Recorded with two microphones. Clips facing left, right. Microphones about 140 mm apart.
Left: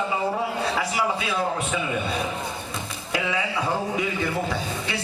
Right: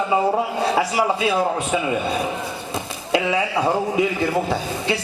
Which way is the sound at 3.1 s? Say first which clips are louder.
Right 7 dB; 30° right (ahead or behind).